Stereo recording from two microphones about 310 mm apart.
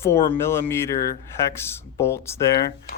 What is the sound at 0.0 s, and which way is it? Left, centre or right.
Speech, centre.